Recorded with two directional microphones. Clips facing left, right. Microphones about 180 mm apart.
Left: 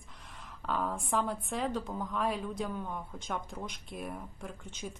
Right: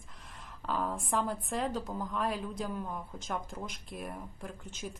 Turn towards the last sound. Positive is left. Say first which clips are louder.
# even
turn(degrees=0)  # may be behind; listen again after turning